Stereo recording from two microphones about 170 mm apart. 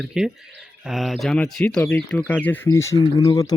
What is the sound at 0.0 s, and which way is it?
Speech, 5° right (ahead or behind).